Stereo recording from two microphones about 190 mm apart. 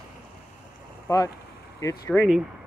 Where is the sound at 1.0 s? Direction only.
15° left (ahead or behind).